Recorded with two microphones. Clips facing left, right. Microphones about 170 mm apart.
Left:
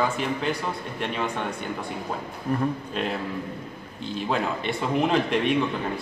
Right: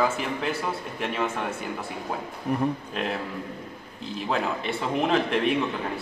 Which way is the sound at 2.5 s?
15° right (ahead or behind).